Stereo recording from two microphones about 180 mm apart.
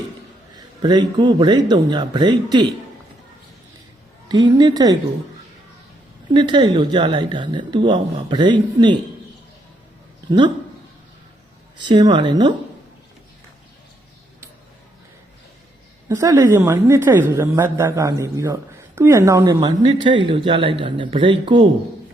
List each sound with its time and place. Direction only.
0.8 s speech: 25° right (ahead or behind)
4.3 s speech: 25° right (ahead or behind)
6.3 s speech: 25° right (ahead or behind)
11.8 s speech: 25° right (ahead or behind)
16.0 s a woman's voice: 15° right (ahead or behind)